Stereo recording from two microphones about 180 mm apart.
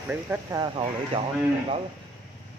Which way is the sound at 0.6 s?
30° right (ahead or behind).